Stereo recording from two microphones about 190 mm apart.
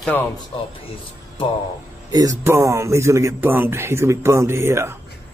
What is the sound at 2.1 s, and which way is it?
Speech, 20° right (ahead or behind).